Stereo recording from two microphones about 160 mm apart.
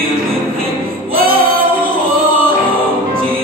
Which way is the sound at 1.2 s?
65° right (ahead or behind).